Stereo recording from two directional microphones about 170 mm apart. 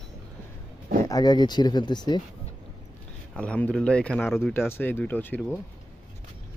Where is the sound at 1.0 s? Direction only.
20° left (ahead or behind).